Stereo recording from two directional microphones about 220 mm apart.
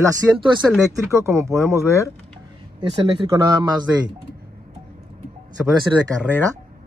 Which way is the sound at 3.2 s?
20° right (ahead or behind).